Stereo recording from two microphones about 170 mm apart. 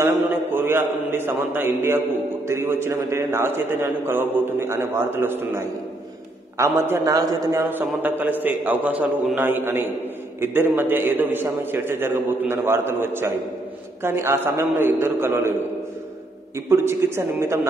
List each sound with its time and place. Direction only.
0.0 s a man's voice: 10° right (ahead or behind)
6.6 s a man's voice: 20° right (ahead or behind)
16.5 s a man's voice: 15° right (ahead or behind)